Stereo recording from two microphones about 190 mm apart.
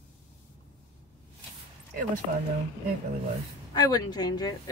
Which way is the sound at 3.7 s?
20° left (ahead or behind).